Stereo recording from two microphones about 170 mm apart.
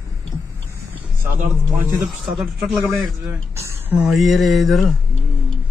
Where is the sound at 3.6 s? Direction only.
10° right (ahead or behind).